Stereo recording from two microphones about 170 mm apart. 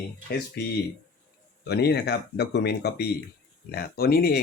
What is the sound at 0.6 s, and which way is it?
Speech, 70° left (ahead or behind).